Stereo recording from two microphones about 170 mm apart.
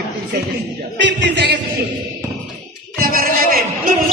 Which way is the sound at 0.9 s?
90° right.